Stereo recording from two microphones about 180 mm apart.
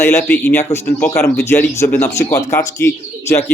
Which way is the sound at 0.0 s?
15° left (ahead or behind).